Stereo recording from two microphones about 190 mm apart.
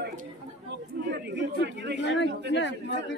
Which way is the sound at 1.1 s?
65° right (ahead or behind).